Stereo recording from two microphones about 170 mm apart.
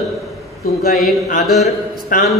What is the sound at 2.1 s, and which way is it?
Speech, 55° left (ahead or behind).